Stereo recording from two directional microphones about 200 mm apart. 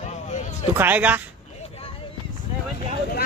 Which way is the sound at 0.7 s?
10° right (ahead or behind).